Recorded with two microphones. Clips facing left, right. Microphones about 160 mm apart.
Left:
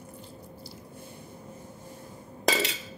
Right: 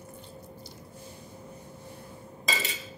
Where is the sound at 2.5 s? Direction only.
70° left (ahead or behind).